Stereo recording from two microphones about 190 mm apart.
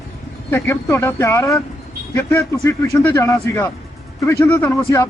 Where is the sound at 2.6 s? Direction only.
15° left (ahead or behind).